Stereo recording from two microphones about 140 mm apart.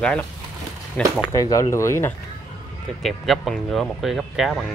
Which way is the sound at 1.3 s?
25° left (ahead or behind).